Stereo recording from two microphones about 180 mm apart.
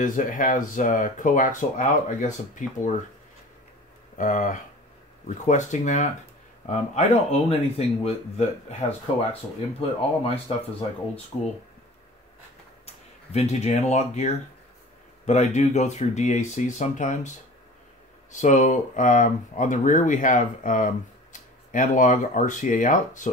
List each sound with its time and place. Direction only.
0.0 s speech: 45° left (ahead or behind)
4.2 s speech: 45° left (ahead or behind)
12.8 s speech: 35° left (ahead or behind)
18.3 s speech: 45° left (ahead or behind)